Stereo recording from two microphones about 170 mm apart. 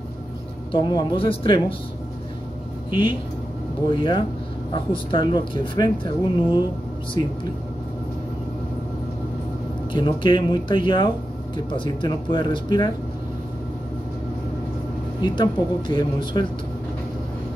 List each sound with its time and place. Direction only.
0.7 s speech: 25° left (ahead or behind)
2.9 s speech: 30° left (ahead or behind)
9.9 s speech: 30° left (ahead or behind)
15.2 s speech: 25° left (ahead or behind)